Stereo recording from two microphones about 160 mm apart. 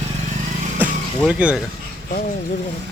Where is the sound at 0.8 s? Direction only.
10° right (ahead or behind).